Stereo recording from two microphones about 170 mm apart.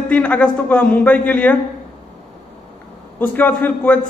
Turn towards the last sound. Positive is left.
turn(degrees=10)  # may be behind; listen again after turning